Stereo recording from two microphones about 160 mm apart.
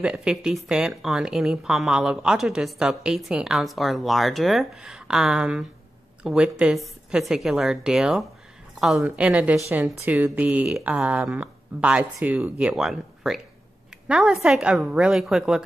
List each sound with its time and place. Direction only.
0.0 s speech: 5° right (ahead or behind)